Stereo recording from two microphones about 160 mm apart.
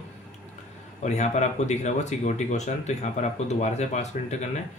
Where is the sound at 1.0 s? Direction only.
45° left (ahead or behind).